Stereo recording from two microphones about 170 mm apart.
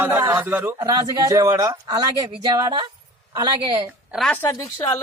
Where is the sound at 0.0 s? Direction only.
15° right (ahead or behind).